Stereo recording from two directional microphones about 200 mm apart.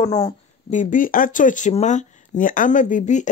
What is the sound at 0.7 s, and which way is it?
Speech, 40° left (ahead or behind).